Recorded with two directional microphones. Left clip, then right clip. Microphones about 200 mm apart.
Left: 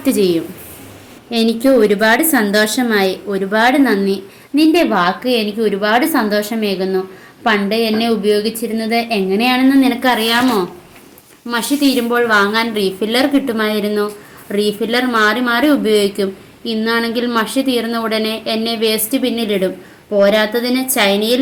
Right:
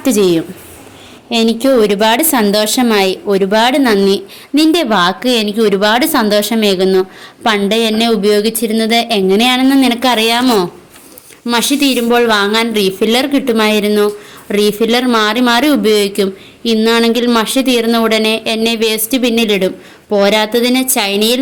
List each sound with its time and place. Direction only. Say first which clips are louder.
0.0 s a woman's voice: right 3 dB; 35° right (ahead or behind)